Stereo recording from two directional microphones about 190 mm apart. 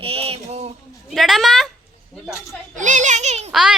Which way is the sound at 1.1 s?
Centre (ahead or behind).